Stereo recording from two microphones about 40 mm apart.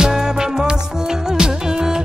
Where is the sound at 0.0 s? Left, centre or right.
Centre.